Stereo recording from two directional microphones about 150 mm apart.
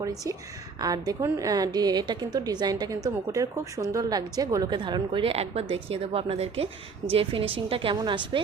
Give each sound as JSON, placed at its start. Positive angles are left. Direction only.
{"t": 0.0, "sound": "a woman's voice", "side_deg": -20}